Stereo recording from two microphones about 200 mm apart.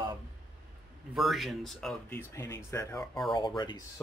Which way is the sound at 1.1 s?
Centre (ahead or behind).